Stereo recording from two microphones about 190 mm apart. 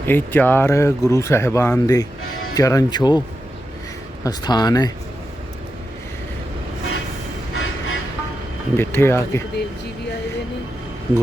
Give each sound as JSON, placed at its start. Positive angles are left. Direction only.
{"t": 0.1, "sound": "speech", "side_deg": 10}
{"t": 4.2, "sound": "speech", "side_deg": 20}
{"t": 7.5, "sound": "vehicle", "side_deg": 90}
{"t": 8.7, "sound": "speech", "side_deg": 10}